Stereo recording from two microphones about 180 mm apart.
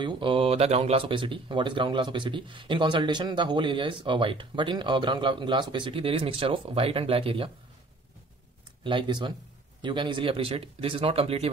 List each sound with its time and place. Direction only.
0.0 s speech: 30° right (ahead or behind)
8.8 s speech: 25° right (ahead or behind)